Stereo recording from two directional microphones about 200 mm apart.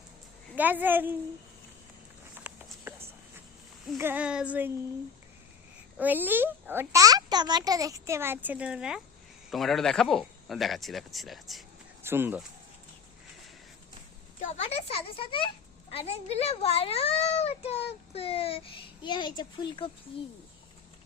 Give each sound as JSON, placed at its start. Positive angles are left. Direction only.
{"t": 0.5, "sound": "a child's voice", "side_deg": -10}
{"t": 2.5, "sound": "a sound", "side_deg": -10}
{"t": 3.9, "sound": "a child's voice", "side_deg": -10}
{"t": 6.0, "sound": "a child's voice", "side_deg": -10}
{"t": 12.0, "sound": "a child's voice", "side_deg": -10}
{"t": 14.4, "sound": "a child's voice", "side_deg": 35}